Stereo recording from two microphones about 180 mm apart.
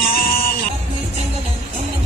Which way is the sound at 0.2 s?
55° left (ahead or behind).